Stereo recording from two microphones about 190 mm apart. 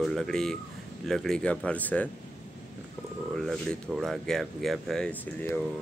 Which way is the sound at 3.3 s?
Centre (ahead or behind).